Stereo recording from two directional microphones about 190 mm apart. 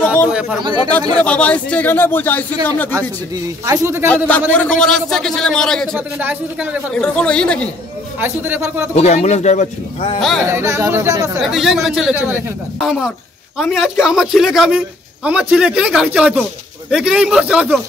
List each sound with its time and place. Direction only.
0.0 s chatter: 10° left (ahead or behind)
0.3 s a man's voice: 5° right (ahead or behind)
1.1 s speech: 5° left (ahead or behind)
3.0 s a man's voice: 15° right (ahead or behind)
4.1 s a man's voice: 10° left (ahead or behind)
5.9 s a man's voice: 10° right (ahead or behind)
6.9 s a man's voice: 5° left (ahead or behind)
8.2 s a man's voice: 10° right (ahead or behind)
8.9 s speech: 35° left (ahead or behind)
10.4 s a man's voice: 15° right (ahead or behind)
11.3 s a man's voice: centre (ahead or behind)